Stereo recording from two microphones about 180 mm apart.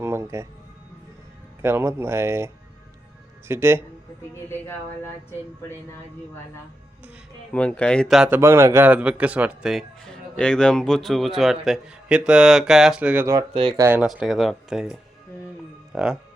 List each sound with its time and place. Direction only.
0.0 s music: 15° right (ahead or behind)
1.6 s speech: 15° right (ahead or behind)
3.5 s speech: 15° right (ahead or behind)
7.5 s speech: 5° left (ahead or behind)
8.4 s speech: 15° right (ahead or behind)
13.5 s speech: 30° right (ahead or behind)
13.7 s speech: 10° right (ahead or behind)